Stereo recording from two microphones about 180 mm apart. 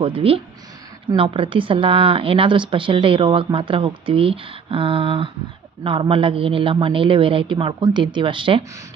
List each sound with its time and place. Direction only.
0.0 s speech: 30° right (ahead or behind)